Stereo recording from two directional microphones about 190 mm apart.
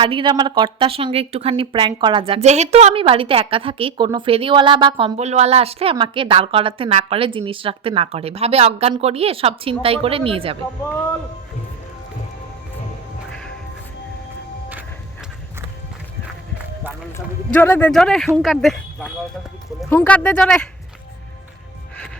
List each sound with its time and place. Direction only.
0.0 s speech: 25° right (ahead or behind)
17.2 s speech: 10° left (ahead or behind)